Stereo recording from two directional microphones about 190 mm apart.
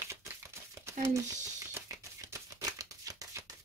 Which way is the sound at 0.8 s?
15° right (ahead or behind).